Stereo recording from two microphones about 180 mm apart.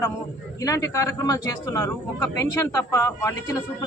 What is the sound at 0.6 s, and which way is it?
A man's voice, 20° left (ahead or behind).